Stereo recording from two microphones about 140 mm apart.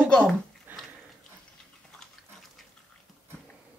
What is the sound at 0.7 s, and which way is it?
Sniff, 15° right (ahead or behind).